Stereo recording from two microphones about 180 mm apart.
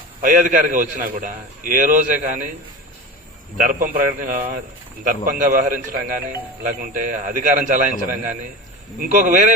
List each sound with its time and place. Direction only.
0.2 s a man's voice: 50° right (ahead or behind)
3.6 s a man's voice: 50° right (ahead or behind)